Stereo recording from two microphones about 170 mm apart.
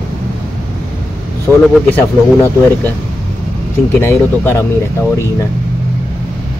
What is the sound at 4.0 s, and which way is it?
Speech, 15° left (ahead or behind).